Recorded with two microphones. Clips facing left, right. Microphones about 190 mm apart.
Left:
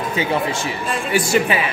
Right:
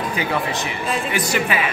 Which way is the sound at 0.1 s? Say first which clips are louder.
Left 2 dB; 25° left (ahead or behind).